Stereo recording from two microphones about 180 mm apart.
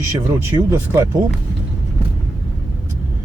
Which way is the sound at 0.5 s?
25° right (ahead or behind).